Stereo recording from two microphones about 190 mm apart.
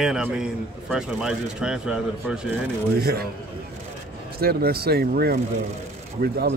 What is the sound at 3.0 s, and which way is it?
Speech, 55° right (ahead or behind).